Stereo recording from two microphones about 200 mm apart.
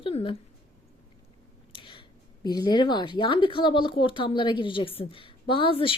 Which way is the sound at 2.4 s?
20° left (ahead or behind).